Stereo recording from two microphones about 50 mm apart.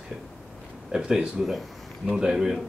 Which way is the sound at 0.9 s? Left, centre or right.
Centre.